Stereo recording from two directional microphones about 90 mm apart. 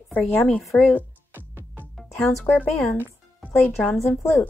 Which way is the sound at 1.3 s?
20° right (ahead or behind).